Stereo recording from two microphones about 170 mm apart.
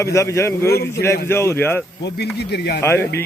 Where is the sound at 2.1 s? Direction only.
75° left (ahead or behind).